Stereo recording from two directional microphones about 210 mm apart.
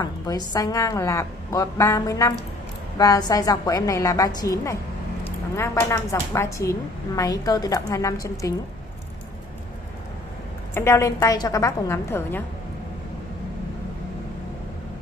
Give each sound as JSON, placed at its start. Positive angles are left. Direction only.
{"t": 0.0, "sound": "a woman's voice", "side_deg": 20}
{"t": 10.7, "sound": "a woman's voice", "side_deg": 15}